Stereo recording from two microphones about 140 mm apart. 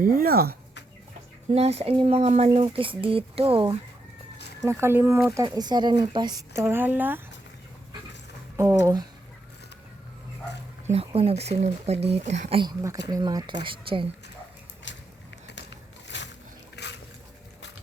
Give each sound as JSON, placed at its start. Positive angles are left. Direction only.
{"t": 0.0, "sound": "speech", "side_deg": -85}
{"t": 1.5, "sound": "speech", "side_deg": -45}
{"t": 4.6, "sound": "speech", "side_deg": -20}
{"t": 8.5, "sound": "speech", "side_deg": -20}
{"t": 10.8, "sound": "speech", "side_deg": -45}
{"t": 12.8, "sound": "speech", "side_deg": -25}